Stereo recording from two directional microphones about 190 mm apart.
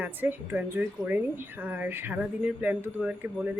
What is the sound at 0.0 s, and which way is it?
A woman's voice, 10° right (ahead or behind).